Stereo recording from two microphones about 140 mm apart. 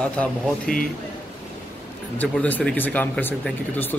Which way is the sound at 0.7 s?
90° left.